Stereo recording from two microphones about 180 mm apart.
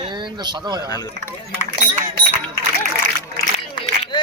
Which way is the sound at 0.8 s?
20° left (ahead or behind).